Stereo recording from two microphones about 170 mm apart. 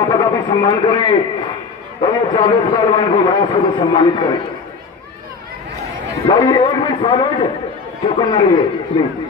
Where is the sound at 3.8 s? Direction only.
30° left (ahead or behind).